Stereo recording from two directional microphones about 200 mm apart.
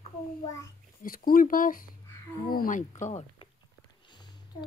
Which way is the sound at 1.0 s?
45° left (ahead or behind).